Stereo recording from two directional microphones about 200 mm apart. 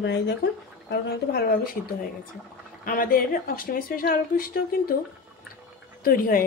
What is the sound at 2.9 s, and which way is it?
Speech, 45° left (ahead or behind).